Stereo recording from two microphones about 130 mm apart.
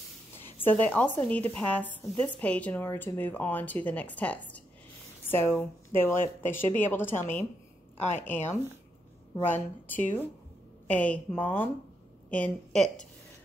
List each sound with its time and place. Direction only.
0.4 s a woman's voice: 15° left (ahead or behind)